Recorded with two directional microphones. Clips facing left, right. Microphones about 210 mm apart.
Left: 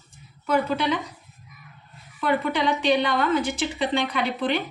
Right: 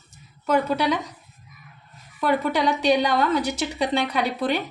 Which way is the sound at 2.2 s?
40° right (ahead or behind).